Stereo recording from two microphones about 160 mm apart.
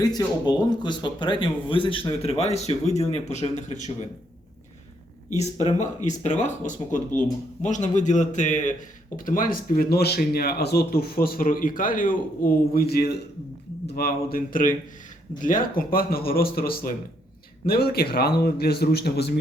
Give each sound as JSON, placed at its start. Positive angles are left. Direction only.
{"t": 0.0, "sound": "speech", "side_deg": 25}
{"t": 6.1, "sound": "speech", "side_deg": 50}
{"t": 12.7, "sound": "speech", "side_deg": 75}